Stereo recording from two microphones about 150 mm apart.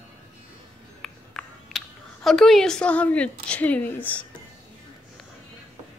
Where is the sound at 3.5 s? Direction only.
10° left (ahead or behind).